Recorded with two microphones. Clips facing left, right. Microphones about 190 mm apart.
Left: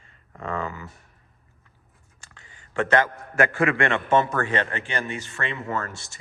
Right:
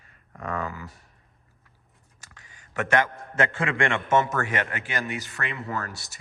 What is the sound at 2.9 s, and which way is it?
Speech, 20° right (ahead or behind).